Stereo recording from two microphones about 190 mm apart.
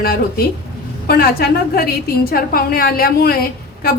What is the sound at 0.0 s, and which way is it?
A woman's voice, 55° left (ahead or behind).